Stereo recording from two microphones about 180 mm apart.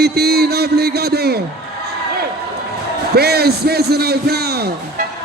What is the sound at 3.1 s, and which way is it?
A man's voice, 60° right (ahead or behind).